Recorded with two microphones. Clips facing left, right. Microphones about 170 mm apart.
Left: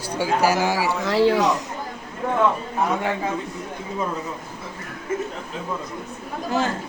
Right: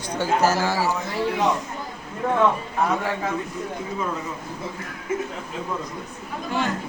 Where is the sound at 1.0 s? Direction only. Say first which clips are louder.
Left 5 dB; 85° left.